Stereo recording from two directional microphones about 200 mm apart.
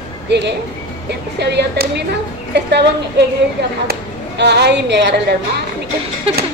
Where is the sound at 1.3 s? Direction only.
55° right (ahead or behind).